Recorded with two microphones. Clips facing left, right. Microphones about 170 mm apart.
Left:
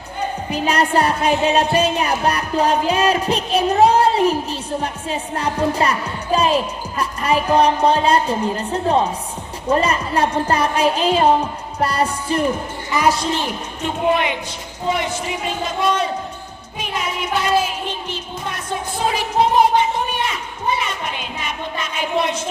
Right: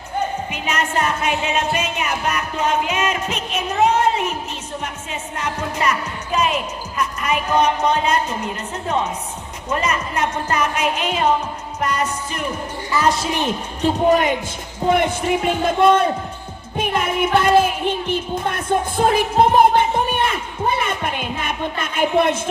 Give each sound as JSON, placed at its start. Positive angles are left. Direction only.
{"t": 0.5, "sound": "music", "side_deg": 35}
{"t": 13.1, "sound": "a man's voice", "side_deg": 0}
{"t": 13.8, "sound": "speech", "side_deg": -40}
{"t": 14.8, "sound": "a man's voice", "side_deg": -55}
{"t": 16.7, "sound": "music", "side_deg": -55}